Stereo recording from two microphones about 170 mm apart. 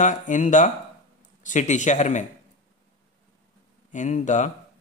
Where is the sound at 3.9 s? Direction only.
45° left (ahead or behind).